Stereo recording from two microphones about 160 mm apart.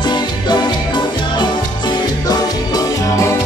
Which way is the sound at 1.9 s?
25° left (ahead or behind).